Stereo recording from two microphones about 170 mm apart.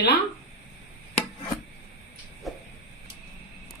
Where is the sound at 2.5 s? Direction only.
Centre (ahead or behind).